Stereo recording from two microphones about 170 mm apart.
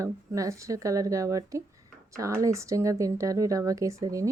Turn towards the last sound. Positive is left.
turn(degrees=-20)  # may be behind; listen again after turning